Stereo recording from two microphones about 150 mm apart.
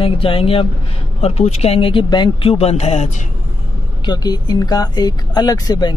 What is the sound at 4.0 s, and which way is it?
Speech, 25° left (ahead or behind).